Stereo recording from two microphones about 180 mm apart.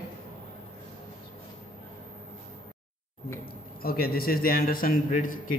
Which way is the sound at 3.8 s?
55° left (ahead or behind).